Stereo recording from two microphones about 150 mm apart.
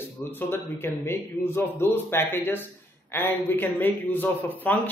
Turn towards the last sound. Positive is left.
turn(degrees=15)  # may be behind; listen again after turning